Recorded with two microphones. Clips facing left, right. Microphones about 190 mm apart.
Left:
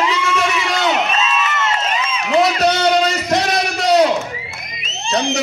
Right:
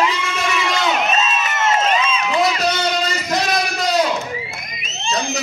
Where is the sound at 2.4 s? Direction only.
70° left (ahead or behind).